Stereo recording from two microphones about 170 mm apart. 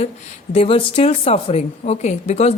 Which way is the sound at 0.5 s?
35° left (ahead or behind).